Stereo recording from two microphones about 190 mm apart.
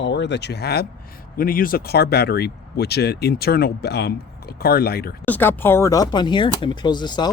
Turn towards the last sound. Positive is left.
turn(degrees=25)  # may be behind; listen again after turning